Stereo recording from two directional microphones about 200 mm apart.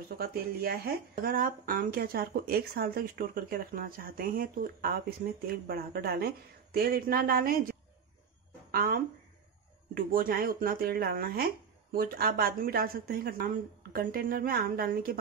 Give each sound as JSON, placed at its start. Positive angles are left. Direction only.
{"t": 0.2, "sound": "speech", "side_deg": -50}
{"t": 8.7, "sound": "speech", "side_deg": -45}